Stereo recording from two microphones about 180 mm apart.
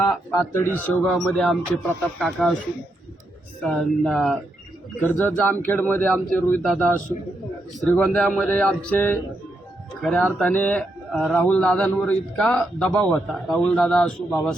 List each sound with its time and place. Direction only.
0.0 s speech: 20° left (ahead or behind)
1.0 s a man's voice: centre (ahead or behind)
3.6 s a man's voice: 5° left (ahead or behind)